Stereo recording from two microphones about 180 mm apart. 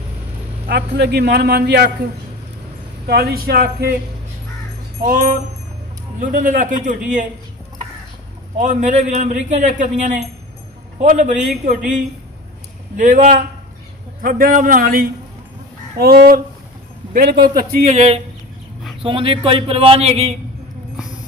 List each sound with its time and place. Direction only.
0.7 s a man's voice: 65° right (ahead or behind)
3.1 s a man's voice: 60° right (ahead or behind)
5.0 s a man's voice: 50° right (ahead or behind)
8.5 s a man's voice: 40° right (ahead or behind)
12.9 s a man's voice: 45° right (ahead or behind); by 17.6 s 60° right (ahead or behind)
17.8 s a man's voice: 35° right (ahead or behind)